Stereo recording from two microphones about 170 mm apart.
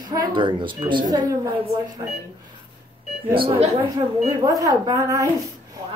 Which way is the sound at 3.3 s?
30° right (ahead or behind).